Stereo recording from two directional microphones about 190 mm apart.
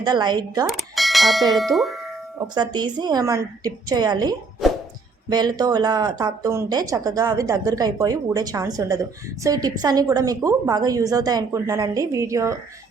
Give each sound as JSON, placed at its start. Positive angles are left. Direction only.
{"t": 0.0, "sound": "speech", "side_deg": -20}
{"t": 0.7, "sound": "speech", "side_deg": 0}
{"t": 2.6, "sound": "speech", "side_deg": -20}
{"t": 4.6, "sound": "music", "side_deg": 0}
{"t": 5.3, "sound": "a woman's voice", "side_deg": -20}